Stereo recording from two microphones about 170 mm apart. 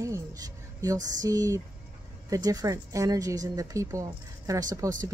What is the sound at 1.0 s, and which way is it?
Speech, 20° right (ahead or behind).